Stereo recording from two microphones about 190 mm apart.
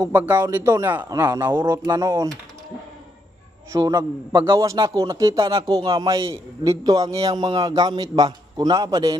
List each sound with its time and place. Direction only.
0.0 s a man's voice: 10° right (ahead or behind)
3.7 s a man's voice: 20° right (ahead or behind)